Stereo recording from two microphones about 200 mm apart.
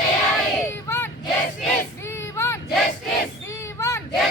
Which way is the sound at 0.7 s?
10° left (ahead or behind).